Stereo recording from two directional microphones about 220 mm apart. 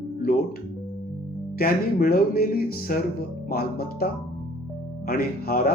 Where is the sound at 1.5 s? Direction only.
40° left (ahead or behind).